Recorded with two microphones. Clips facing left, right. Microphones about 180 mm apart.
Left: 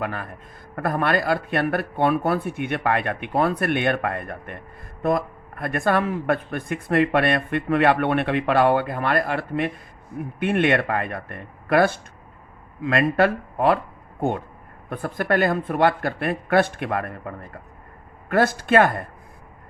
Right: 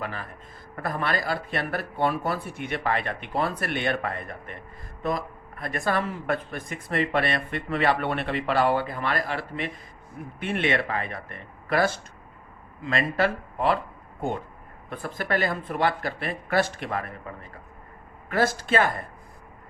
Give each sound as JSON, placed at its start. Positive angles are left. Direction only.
{"t": 0.0, "sound": "speech", "side_deg": 55}
{"t": 14.8, "sound": "speech", "side_deg": 50}